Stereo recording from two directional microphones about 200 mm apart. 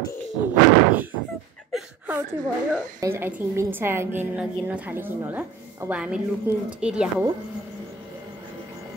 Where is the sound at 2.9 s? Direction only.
15° right (ahead or behind).